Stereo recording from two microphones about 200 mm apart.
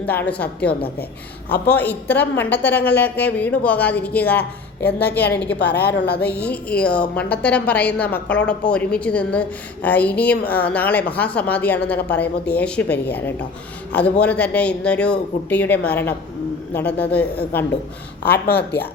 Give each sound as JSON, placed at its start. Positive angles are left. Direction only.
{"t": 0.0, "sound": "a woman's voice", "side_deg": 10}
{"t": 1.5, "sound": "a woman's voice", "side_deg": 55}
{"t": 1.7, "sound": "a woman's voice", "side_deg": 10}
{"t": 5.8, "sound": "speech", "side_deg": 60}
{"t": 6.5, "sound": "a woman's voice", "side_deg": 5}
{"t": 18.3, "sound": "a woman's voice", "side_deg": 55}